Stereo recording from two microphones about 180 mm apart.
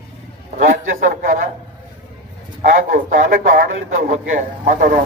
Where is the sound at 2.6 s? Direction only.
45° right (ahead or behind).